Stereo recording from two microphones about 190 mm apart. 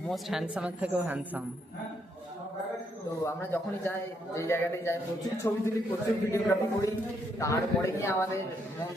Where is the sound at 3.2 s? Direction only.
10° left (ahead or behind).